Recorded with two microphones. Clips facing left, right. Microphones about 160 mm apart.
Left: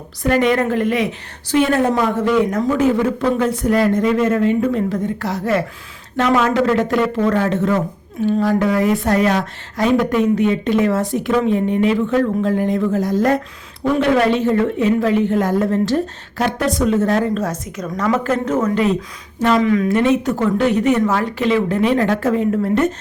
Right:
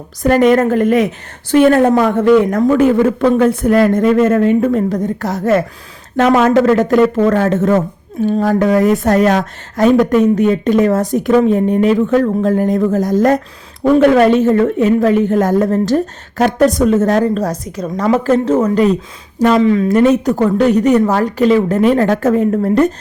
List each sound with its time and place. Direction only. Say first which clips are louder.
0.2 s speech: right 6 dB; 45° right (ahead or behind)